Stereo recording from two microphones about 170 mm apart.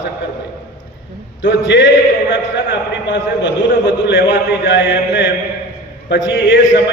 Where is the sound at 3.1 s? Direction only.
90° left.